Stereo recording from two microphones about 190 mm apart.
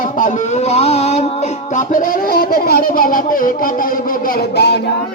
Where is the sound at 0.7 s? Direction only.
35° left (ahead or behind).